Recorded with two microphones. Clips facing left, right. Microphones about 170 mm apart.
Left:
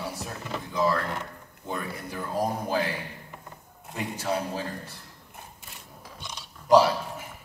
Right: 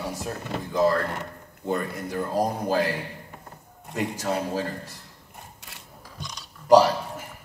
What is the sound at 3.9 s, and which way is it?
Speech, 85° right.